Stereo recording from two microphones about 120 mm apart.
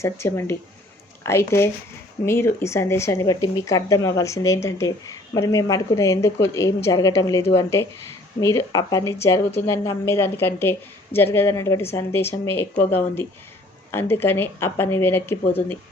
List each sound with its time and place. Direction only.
0.0 s speech: 20° left (ahead or behind)